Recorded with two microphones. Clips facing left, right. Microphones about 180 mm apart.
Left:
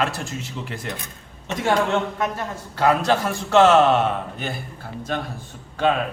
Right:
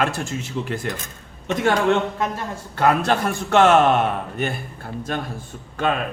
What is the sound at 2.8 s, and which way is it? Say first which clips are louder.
A man's voice: even; 55° right (ahead or behind).